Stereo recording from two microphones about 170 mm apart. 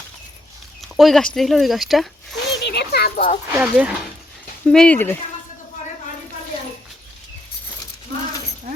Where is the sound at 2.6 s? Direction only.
75° left (ahead or behind).